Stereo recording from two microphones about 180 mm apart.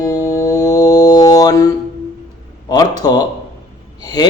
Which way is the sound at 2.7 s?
20° left (ahead or behind).